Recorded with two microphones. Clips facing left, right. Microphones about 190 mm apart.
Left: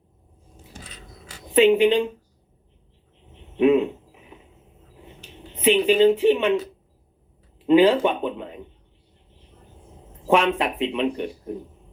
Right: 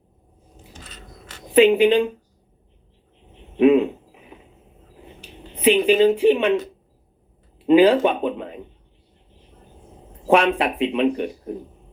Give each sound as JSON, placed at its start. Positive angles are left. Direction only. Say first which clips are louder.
{"t": 1.5, "sound": "speech", "louder": "right 2 dB", "side_deg": -15}
{"t": 3.6, "sound": "speech", "louder": "right 3 dB", "side_deg": -15}
{"t": 4.1, "sound": "a sound", "louder": "right 2 dB", "side_deg": -15}
{"t": 7.7, "sound": "speech", "louder": "right 2 dB", "side_deg": -15}
{"t": 10.2, "sound": "speech", "louder": "right 2 dB", "side_deg": -15}